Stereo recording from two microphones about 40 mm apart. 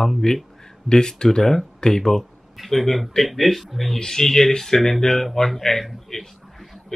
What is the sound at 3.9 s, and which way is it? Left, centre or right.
Speech, centre.